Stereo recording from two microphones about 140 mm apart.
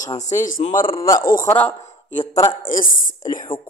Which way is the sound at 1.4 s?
10° left (ahead or behind).